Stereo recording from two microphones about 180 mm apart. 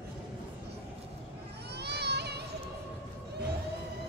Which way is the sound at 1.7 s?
65° right (ahead or behind).